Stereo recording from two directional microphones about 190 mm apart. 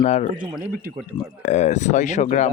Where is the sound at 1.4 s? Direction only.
40° left (ahead or behind).